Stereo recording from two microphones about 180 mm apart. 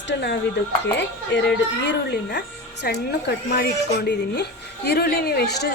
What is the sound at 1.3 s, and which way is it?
Speech, 70° left (ahead or behind).